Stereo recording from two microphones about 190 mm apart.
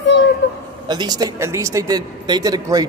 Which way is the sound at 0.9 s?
20° right (ahead or behind).